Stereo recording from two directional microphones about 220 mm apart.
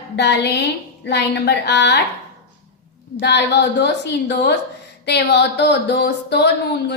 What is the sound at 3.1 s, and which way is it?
A woman's voice, 50° left (ahead or behind).